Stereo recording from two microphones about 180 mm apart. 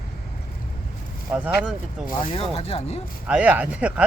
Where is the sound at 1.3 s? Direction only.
5° right (ahead or behind).